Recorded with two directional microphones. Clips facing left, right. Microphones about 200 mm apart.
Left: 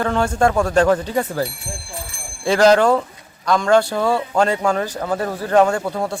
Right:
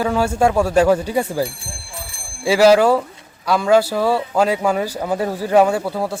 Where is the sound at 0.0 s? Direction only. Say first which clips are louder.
Right 1 dB; 5° right (ahead or behind).